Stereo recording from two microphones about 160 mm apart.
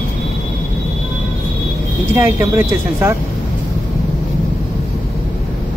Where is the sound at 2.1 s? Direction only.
15° right (ahead or behind).